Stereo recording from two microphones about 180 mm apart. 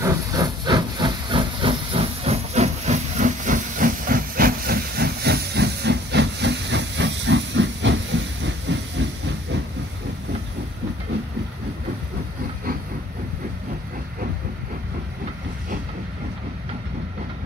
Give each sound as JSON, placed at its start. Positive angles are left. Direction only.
{"t": 0.0, "sound": "hiss", "side_deg": -20}